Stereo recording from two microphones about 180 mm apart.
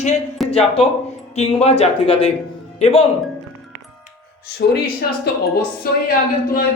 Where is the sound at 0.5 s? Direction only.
35° left (ahead or behind).